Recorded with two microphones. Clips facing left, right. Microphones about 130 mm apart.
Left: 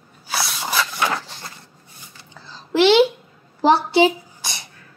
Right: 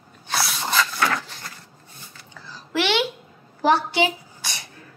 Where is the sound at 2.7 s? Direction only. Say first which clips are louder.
Left 9 dB; 30° left (ahead or behind).